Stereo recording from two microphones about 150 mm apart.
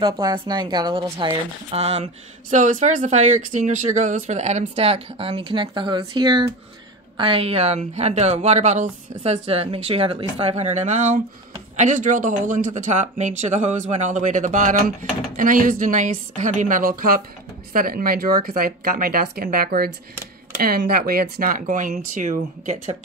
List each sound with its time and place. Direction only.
0.0 s a woman's voice: 30° right (ahead or behind)
1.1 s speech: 40° right (ahead or behind)
2.5 s a woman's voice: 55° right (ahead or behind)